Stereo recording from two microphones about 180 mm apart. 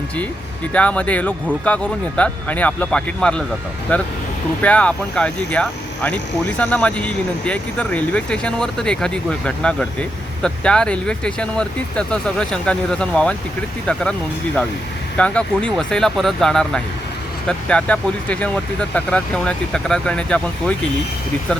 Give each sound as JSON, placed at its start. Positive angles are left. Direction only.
{"t": 0.7, "sound": "speech", "side_deg": 5}